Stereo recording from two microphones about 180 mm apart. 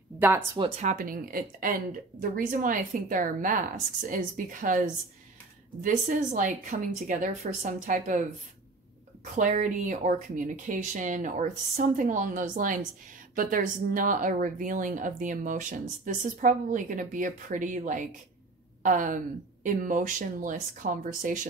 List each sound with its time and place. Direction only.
0.6 s speech: 40° right (ahead or behind)